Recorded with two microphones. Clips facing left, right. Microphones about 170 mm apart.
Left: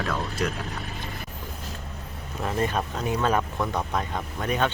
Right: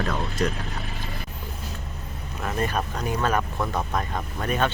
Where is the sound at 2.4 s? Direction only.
20° left (ahead or behind).